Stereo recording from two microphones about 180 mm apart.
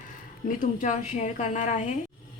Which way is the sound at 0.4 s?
45° left (ahead or behind).